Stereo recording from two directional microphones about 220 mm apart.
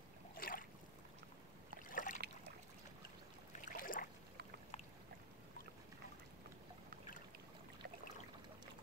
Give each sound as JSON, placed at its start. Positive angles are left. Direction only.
{"t": 0.4, "sound": "boat", "side_deg": 40}
{"t": 1.9, "sound": "boat", "side_deg": 35}
{"t": 3.6, "sound": "boat", "side_deg": 40}